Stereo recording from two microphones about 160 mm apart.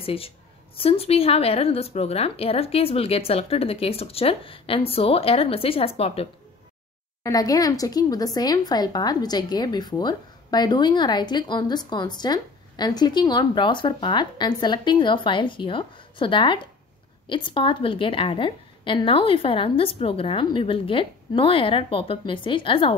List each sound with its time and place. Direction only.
0.0 s a woman's voice: 35° left (ahead or behind)
7.2 s a woman's voice: 20° left (ahead or behind)